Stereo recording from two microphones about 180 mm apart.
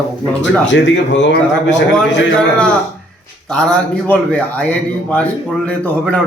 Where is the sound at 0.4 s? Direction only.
90° left.